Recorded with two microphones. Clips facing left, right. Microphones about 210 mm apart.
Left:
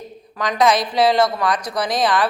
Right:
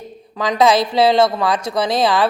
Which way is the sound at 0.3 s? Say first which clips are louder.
Right 3 dB; 25° right (ahead or behind).